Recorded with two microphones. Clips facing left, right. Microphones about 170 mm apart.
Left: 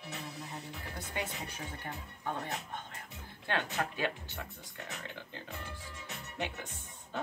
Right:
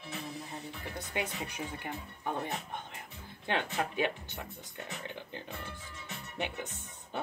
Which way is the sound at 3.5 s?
20° right (ahead or behind).